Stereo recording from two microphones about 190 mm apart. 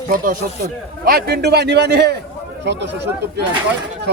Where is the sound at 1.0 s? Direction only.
55° right (ahead or behind).